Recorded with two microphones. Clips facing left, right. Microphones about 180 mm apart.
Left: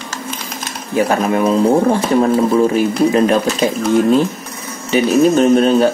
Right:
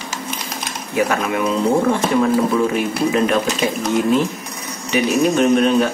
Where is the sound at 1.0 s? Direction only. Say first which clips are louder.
Left 4 dB; 35° left (ahead or behind).